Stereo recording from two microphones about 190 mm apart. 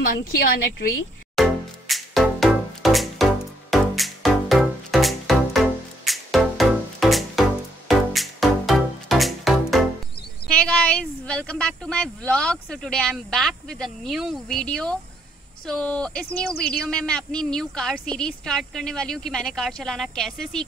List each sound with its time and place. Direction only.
0.0 s a woman's voice: 55° left (ahead or behind)
1.3 s music: centre (ahead or behind)
10.5 s a woman's voice: 5° left (ahead or behind)